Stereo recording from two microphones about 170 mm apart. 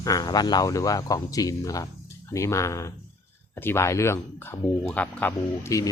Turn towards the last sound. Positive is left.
turn(degrees=20)  # may be behind; listen again after turning